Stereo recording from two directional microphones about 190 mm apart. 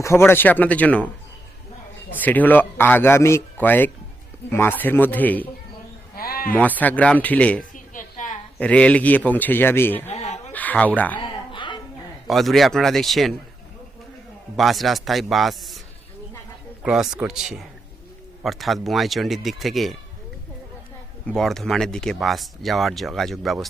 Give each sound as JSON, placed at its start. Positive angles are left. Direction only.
{"t": 0.0, "sound": "speech", "side_deg": 15}
{"t": 2.1, "sound": "speech", "side_deg": 10}
{"t": 6.1, "sound": "bleat", "side_deg": 50}
{"t": 6.5, "sound": "speech", "side_deg": 10}
{"t": 7.9, "sound": "a sound", "side_deg": 40}
{"t": 8.5, "sound": "speech", "side_deg": 5}
{"t": 10.1, "sound": "a sound", "side_deg": 35}
{"t": 10.5, "sound": "speech", "side_deg": 10}
{"t": 11.5, "sound": "a sound", "side_deg": 25}
{"t": 12.3, "sound": "speech", "side_deg": 0}
{"t": 14.5, "sound": "speech", "side_deg": 0}
{"t": 16.8, "sound": "speech", "side_deg": -5}
{"t": 21.2, "sound": "speech", "side_deg": 0}